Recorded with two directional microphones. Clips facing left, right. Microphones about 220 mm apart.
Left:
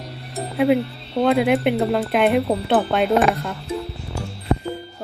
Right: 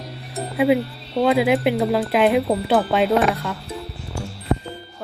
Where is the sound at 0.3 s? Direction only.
Centre (ahead or behind).